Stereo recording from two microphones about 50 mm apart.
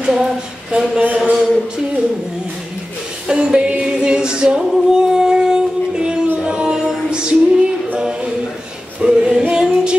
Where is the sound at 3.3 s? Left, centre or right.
Centre.